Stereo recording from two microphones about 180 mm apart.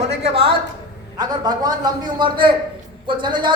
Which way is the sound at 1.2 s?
20° right (ahead or behind).